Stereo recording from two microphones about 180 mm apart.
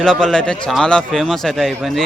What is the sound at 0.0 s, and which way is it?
A man's voice, 5° left (ahead or behind).